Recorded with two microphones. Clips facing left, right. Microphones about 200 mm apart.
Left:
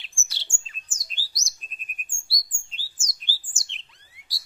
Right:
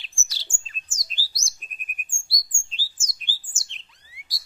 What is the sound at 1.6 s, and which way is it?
Bird, 20° right (ahead or behind).